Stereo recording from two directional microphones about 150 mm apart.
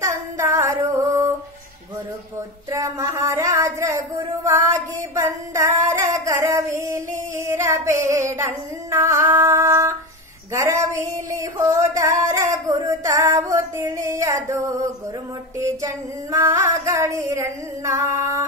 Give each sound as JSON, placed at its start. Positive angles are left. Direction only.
{"t": 0.0, "sound": "female singing", "side_deg": -20}
{"t": 2.7, "sound": "a sound", "side_deg": -20}
{"t": 8.1, "sound": "female singing", "side_deg": -20}
{"t": 10.5, "sound": "a sound", "side_deg": -20}
{"t": 11.9, "sound": "music", "side_deg": -20}
{"t": 15.6, "sound": "female singing", "side_deg": -20}